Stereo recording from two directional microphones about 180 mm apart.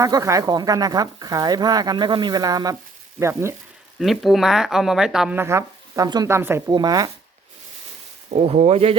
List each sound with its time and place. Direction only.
0.0 s speech: 20° right (ahead or behind)
4.0 s speech: centre (ahead or behind); by 7.1 s 20° right (ahead or behind)
8.4 s speech: 35° right (ahead or behind)